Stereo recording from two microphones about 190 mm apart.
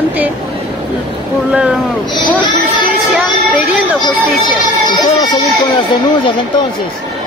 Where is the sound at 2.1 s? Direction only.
25° left (ahead or behind).